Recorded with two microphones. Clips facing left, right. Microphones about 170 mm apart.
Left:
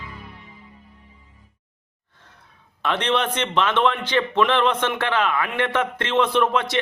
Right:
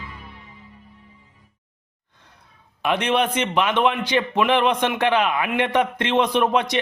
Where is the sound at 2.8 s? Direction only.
10° right (ahead or behind).